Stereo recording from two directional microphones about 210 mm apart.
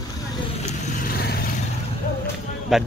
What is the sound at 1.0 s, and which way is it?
Vehicle, 45° left (ahead or behind).